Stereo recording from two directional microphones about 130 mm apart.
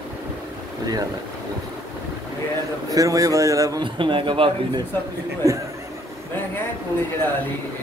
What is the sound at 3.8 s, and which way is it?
A man's voice, 40° right (ahead or behind).